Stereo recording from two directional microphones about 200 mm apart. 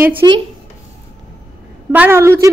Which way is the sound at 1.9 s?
10° right (ahead or behind).